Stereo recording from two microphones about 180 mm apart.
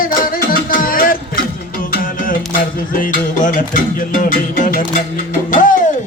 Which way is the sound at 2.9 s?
50° left (ahead or behind).